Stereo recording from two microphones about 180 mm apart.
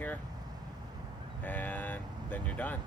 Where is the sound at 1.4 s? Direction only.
10° left (ahead or behind).